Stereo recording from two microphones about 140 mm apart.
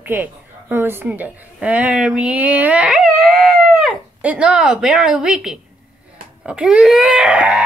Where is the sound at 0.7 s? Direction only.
15° right (ahead or behind).